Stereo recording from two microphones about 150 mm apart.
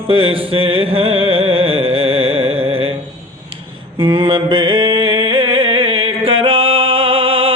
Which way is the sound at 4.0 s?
35° right (ahead or behind).